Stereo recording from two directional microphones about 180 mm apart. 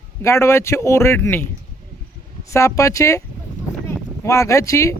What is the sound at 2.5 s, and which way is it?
Speech, 15° left (ahead or behind).